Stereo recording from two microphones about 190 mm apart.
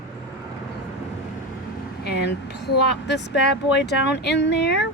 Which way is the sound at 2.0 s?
60° left (ahead or behind).